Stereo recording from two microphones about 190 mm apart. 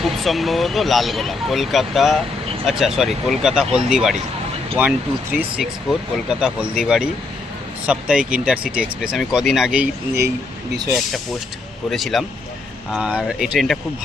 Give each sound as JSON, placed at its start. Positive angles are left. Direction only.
{"t": 0.0, "sound": "speech", "side_deg": 0}
{"t": 11.9, "sound": "speech", "side_deg": 0}